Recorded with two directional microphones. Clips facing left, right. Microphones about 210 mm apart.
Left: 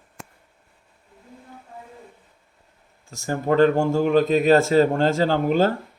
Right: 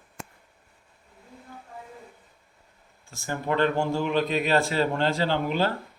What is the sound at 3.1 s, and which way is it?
A man's voice, 40° left (ahead or behind).